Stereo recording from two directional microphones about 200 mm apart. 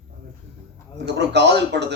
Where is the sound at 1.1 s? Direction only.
55° right (ahead or behind).